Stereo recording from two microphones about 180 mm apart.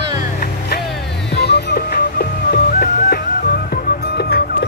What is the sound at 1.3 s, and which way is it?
Music, 65° left (ahead or behind).